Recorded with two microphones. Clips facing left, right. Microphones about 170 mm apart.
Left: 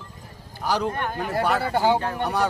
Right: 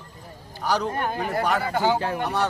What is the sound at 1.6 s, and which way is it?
Speech, 35° left (ahead or behind).